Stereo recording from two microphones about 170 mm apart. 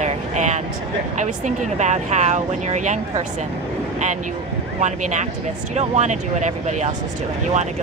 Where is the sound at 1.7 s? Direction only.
45° right (ahead or behind).